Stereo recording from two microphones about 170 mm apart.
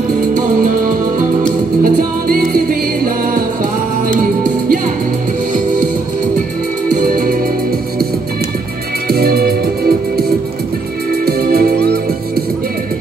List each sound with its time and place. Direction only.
0.3 s music: 55° right (ahead or behind)
6.9 s music: 60° right (ahead or behind)
9.0 s music: 65° right (ahead or behind)
11.2 s music: 60° right (ahead or behind)